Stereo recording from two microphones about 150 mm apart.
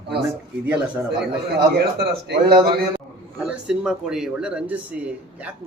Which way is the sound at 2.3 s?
90° right.